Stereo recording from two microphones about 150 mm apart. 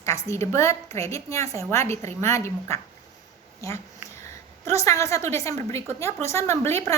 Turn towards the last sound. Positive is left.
turn(degrees=15)  # may be behind; listen again after turning